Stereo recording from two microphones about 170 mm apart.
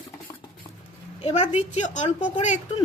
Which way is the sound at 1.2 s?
40° left (ahead or behind).